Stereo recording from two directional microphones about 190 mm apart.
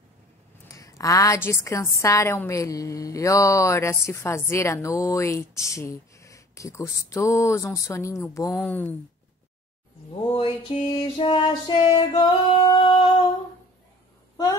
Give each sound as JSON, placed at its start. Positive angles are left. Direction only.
{"t": 0.7, "sound": "a woman's voice", "side_deg": 15}
{"t": 10.3, "sound": "music", "side_deg": 30}